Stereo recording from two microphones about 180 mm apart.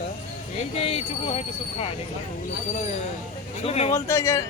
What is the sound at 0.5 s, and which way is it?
Speech, 35° left (ahead or behind).